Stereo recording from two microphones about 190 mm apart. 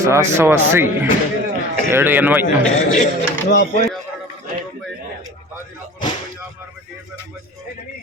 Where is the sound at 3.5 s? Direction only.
45° left (ahead or behind).